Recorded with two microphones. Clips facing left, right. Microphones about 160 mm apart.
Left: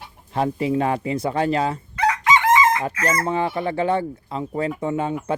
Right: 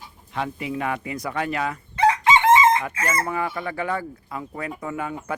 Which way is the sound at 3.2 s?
25° left (ahead or behind).